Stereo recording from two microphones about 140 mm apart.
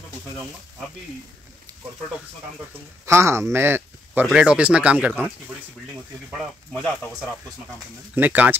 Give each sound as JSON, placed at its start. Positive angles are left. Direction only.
{"t": 3.1, "sound": "speech", "side_deg": -20}
{"t": 8.1, "sound": "speech", "side_deg": -10}